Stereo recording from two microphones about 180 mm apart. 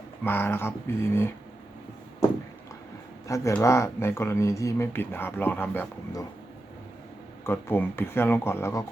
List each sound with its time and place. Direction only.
0.3 s speech: 10° left (ahead or behind)
3.2 s speech: 15° left (ahead or behind)
7.4 s speech: 10° left (ahead or behind)